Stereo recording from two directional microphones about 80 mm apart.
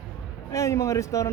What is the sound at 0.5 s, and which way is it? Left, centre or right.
Speech, left.